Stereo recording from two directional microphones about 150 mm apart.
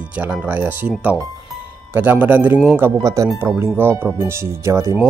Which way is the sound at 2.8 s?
20° right (ahead or behind).